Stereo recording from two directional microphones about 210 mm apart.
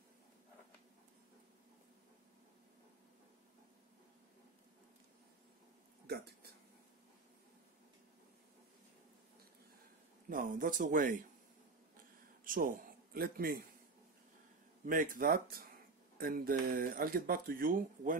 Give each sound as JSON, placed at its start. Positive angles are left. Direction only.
{"t": 6.0, "sound": "a sound", "side_deg": -50}
{"t": 10.3, "sound": "speech", "side_deg": -40}
{"t": 12.4, "sound": "a man's voice", "side_deg": -40}
{"t": 14.9, "sound": "speech", "side_deg": -40}